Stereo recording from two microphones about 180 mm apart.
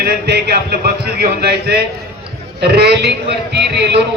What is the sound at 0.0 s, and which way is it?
A man's voice, 65° right (ahead or behind).